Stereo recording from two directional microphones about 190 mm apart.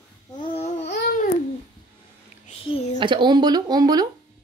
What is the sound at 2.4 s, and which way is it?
Speech, 35° left (ahead or behind).